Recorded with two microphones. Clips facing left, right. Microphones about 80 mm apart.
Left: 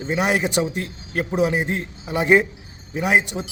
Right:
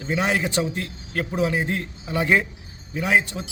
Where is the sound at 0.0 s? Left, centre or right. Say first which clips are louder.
Left 2 dB; centre.